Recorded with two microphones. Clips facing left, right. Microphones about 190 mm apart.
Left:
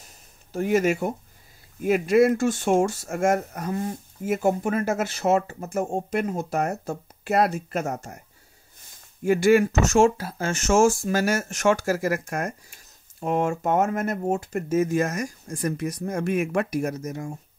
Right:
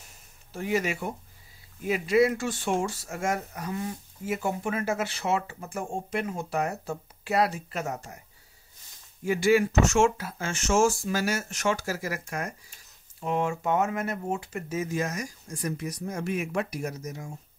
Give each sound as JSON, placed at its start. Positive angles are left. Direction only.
{"t": 0.5, "sound": "speech", "side_deg": 45}
{"t": 9.2, "sound": "speech", "side_deg": 50}
{"t": 9.8, "sound": "speech", "side_deg": 35}